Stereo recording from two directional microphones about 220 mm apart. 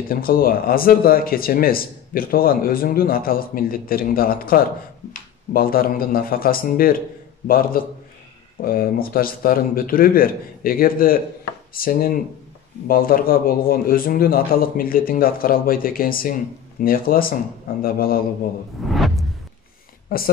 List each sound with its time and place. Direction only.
0.1 s speech: 40° left (ahead or behind)
18.9 s a sound: centre (ahead or behind)
20.1 s speech: 40° left (ahead or behind)